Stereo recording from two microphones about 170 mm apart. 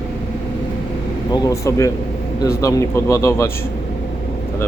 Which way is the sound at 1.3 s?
20° left (ahead or behind).